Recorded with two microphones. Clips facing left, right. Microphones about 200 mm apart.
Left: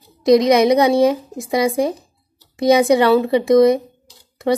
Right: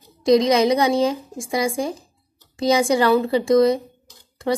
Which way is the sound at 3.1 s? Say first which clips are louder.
Left 3 dB; 20° left (ahead or behind).